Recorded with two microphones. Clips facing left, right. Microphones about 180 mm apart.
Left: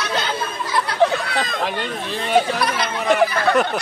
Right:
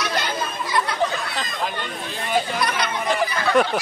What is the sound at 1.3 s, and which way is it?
Chatter, 65° left (ahead or behind).